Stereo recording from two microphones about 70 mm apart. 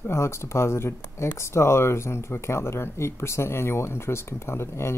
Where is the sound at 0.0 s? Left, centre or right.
Left.